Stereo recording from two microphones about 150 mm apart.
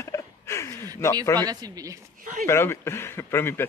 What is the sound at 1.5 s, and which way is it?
Speech, 25° right (ahead or behind).